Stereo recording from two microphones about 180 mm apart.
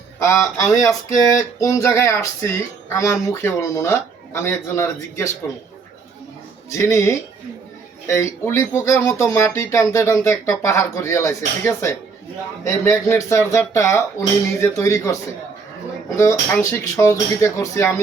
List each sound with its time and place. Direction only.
0.2 s speech: 15° left (ahead or behind)
6.7 s speech: 15° left (ahead or behind)